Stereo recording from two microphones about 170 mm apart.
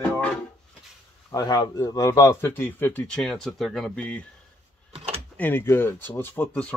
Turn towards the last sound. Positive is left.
turn(degrees=10)  # may be behind; listen again after turning